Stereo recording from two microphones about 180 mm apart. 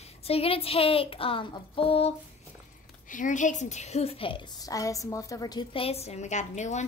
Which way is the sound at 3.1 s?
45° left (ahead or behind).